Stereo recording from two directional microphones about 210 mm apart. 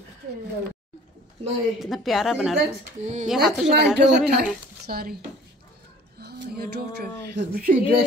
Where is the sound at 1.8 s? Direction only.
Centre (ahead or behind).